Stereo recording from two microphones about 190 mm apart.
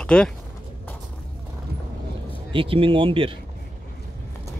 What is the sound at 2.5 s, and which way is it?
Speech, 30° right (ahead or behind).